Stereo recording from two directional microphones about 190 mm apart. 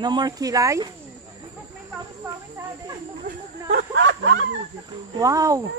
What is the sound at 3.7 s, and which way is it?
Speech, 70° right (ahead or behind).